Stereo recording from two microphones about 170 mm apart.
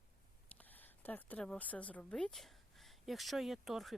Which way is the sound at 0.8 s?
10° left (ahead or behind).